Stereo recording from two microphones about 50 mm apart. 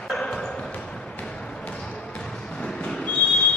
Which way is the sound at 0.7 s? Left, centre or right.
Left.